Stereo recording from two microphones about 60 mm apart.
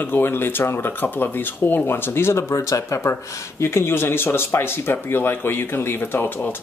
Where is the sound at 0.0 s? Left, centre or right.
Left.